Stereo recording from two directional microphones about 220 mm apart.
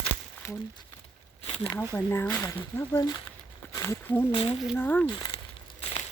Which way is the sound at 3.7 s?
15° left (ahead or behind).